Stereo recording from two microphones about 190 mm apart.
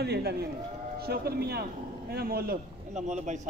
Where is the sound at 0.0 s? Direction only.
60° right (ahead or behind).